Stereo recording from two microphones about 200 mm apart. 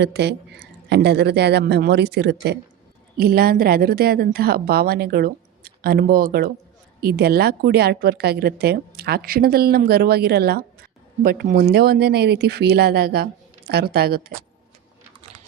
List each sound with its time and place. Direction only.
0.0 s a woman's voice: 55° right (ahead or behind)